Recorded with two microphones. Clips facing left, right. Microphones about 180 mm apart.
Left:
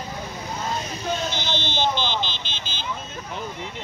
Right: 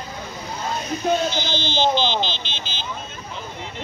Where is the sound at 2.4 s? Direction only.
45° left (ahead or behind).